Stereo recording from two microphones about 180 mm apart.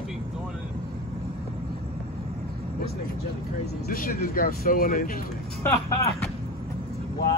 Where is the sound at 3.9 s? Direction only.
50° left (ahead or behind).